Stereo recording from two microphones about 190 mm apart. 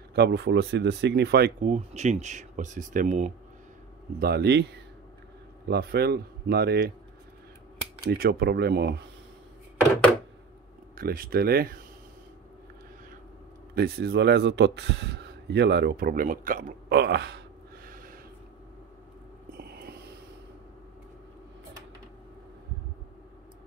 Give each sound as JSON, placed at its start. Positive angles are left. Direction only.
{"t": 0.1, "sound": "a man's voice", "side_deg": -60}
{"t": 1.6, "sound": "speech", "side_deg": -35}
{"t": 4.2, "sound": "a man's voice", "side_deg": -60}
{"t": 5.7, "sound": "a man's voice", "side_deg": -55}
{"t": 8.0, "sound": "a man's voice", "side_deg": -50}
{"t": 11.0, "sound": "speech", "side_deg": -50}
{"t": 13.7, "sound": "a man's voice", "side_deg": -55}
{"t": 19.5, "sound": "a sound", "side_deg": -55}